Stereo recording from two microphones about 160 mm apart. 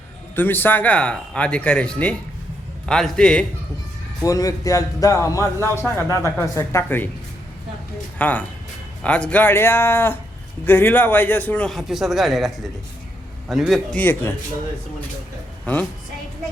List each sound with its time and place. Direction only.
0.3 s a man's voice: 10° left (ahead or behind)
4.2 s a man's voice: 20° left (ahead or behind)
8.2 s a man's voice: 10° left (ahead or behind)
14.0 s a man's voice: 15° left (ahead or behind)
15.6 s a man's voice: 10° left (ahead or behind)